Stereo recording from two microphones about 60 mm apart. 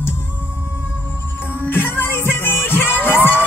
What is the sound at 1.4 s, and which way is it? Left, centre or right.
Music, left.